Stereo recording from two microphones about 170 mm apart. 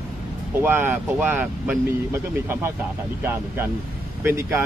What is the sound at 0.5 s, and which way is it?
Speech, 10° right (ahead or behind).